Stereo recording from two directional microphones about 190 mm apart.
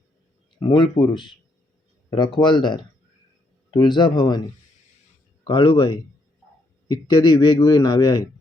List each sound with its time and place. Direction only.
0.6 s a man's voice: 25° left (ahead or behind)
5.5 s a man's voice: 25° left (ahead or behind)